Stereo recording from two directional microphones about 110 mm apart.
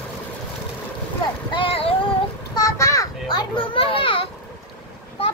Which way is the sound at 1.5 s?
55° left (ahead or behind).